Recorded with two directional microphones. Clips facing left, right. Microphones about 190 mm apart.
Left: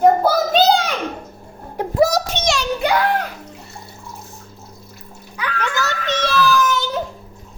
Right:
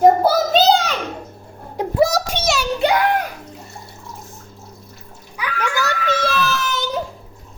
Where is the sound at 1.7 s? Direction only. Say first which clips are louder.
Left 1 dB; 5° right (ahead or behind).